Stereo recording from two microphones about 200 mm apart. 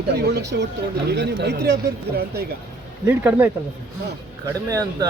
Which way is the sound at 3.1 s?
10° right (ahead or behind).